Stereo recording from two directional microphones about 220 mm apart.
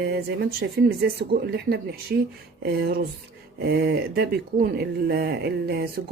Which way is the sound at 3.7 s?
50° right (ahead or behind).